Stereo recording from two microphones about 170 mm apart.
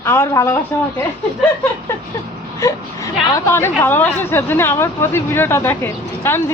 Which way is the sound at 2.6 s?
20° left (ahead or behind).